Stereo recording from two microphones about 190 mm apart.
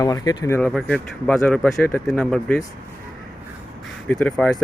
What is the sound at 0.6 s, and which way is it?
Speech, 5° left (ahead or behind).